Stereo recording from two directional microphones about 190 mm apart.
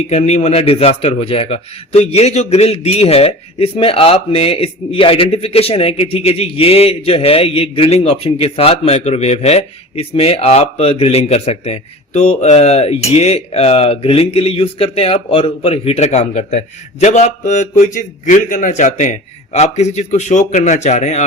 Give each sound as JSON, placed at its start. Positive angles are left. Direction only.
{"t": 0.1, "sound": "a man's voice", "side_deg": 35}